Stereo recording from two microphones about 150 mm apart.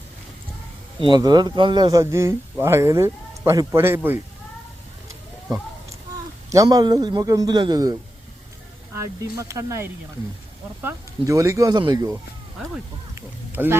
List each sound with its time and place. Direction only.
1.0 s speech: 30° right (ahead or behind)
6.5 s speech: 25° right (ahead or behind)
9.0 s speech: 20° right (ahead or behind)
13.1 s a sound: 15° right (ahead or behind)